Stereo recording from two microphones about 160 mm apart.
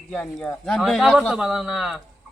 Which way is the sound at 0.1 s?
5° left (ahead or behind).